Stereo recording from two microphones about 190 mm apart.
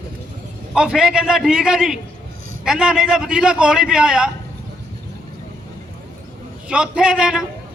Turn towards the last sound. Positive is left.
turn(degrees=-5)  # may be behind; listen again after turning